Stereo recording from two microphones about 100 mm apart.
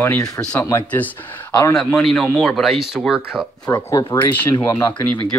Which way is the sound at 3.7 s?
35° left (ahead or behind).